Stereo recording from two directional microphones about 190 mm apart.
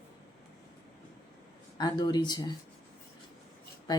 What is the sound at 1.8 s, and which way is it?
Speech, 20° left (ahead or behind).